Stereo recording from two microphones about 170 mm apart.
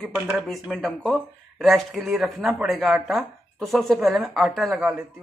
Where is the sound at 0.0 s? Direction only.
Centre (ahead or behind).